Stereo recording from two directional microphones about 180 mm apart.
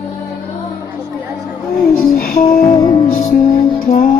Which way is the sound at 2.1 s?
50° left (ahead or behind).